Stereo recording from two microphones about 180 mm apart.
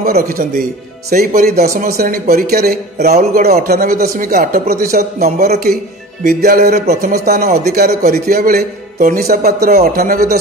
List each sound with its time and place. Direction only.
0.0 s speech: 55° right (ahead or behind)